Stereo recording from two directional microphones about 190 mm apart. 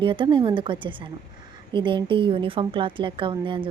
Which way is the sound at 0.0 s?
25° right (ahead or behind).